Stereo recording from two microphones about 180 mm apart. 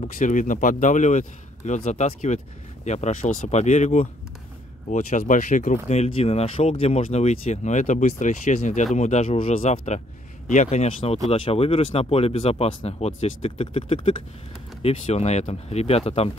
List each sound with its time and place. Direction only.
0.0 s speech: 45° left (ahead or behind)